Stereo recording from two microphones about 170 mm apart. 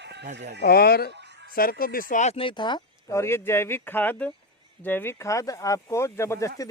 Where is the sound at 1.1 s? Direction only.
90° right.